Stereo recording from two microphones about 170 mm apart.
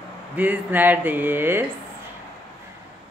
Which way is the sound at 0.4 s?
10° right (ahead or behind).